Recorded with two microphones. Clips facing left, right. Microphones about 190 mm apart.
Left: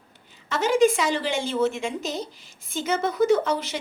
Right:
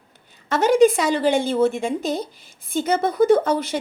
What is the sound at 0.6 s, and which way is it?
A woman's voice, 60° right (ahead or behind).